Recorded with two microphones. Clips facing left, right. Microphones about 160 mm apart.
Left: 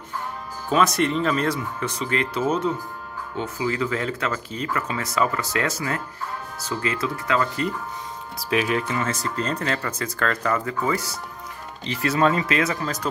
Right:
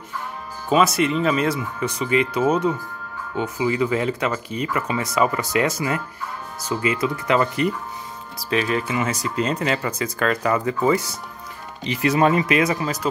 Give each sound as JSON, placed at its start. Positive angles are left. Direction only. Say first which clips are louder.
{"t": 0.7, "sound": "speech", "louder": "right 2 dB", "side_deg": -5}
{"t": 8.4, "sound": "speech", "louder": "right 1 dB", "side_deg": 5}
{"t": 8.8, "sound": "speech", "louder": "right 2 dB", "side_deg": -10}